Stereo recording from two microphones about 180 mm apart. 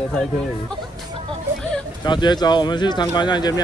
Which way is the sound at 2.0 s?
25° left (ahead or behind).